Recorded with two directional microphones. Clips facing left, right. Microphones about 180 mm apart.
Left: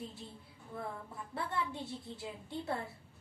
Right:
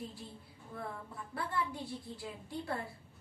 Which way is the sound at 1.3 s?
25° left (ahead or behind).